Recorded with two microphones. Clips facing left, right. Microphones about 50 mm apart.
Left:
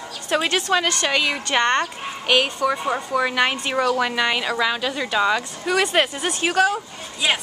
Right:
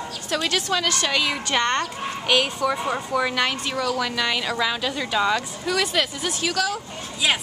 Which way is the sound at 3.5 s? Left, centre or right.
Left.